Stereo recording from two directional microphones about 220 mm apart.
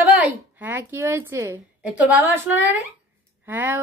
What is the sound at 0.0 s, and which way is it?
A woman's voice, 5° right (ahead or behind).